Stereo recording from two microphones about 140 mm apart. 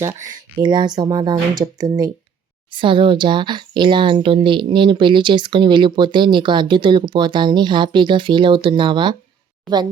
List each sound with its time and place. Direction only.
0.0 s speech: 20° right (ahead or behind)